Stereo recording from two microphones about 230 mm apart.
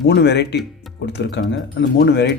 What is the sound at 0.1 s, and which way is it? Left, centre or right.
Speech, left.